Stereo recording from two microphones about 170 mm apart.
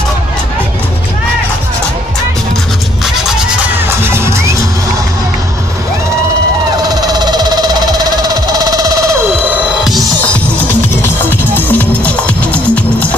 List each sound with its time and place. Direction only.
3.8 s music: 15° right (ahead or behind)
6.9 s a sound: 20° right (ahead or behind)
9.8 s music: 5° left (ahead or behind)
11.7 s music: 10° left (ahead or behind)